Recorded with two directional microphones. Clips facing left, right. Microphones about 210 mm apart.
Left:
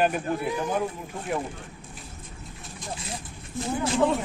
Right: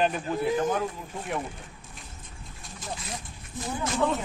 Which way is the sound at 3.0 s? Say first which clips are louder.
Left 2 dB; 30° left (ahead or behind).